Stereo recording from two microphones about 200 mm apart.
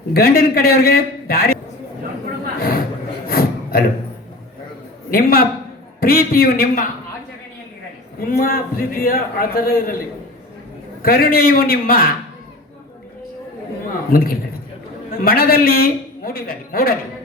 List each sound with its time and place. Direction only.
0.1 s a man's voice: 50° left (ahead or behind)
2.6 s a man's voice: 45° left (ahead or behind)
3.2 s a sound: 45° left (ahead or behind)
5.1 s a man's voice: 45° left (ahead or behind)
8.3 s a man's voice: 45° left (ahead or behind)
11.0 s a man's voice: 45° left (ahead or behind)
14.1 s a man's voice: 45° left (ahead or behind)